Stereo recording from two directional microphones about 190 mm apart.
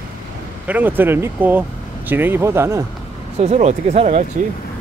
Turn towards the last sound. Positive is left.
turn(degrees=-35)  # may be behind; listen again after turning